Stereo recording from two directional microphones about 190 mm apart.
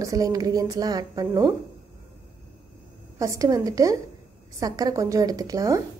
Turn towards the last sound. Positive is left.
turn(degrees=-15)  # may be behind; listen again after turning